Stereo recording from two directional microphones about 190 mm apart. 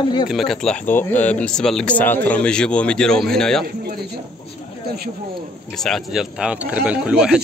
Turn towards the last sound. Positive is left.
turn(degrees=-5)  # may be behind; listen again after turning